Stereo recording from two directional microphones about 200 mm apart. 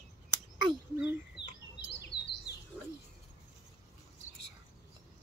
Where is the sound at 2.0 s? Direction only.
55° left (ahead or behind).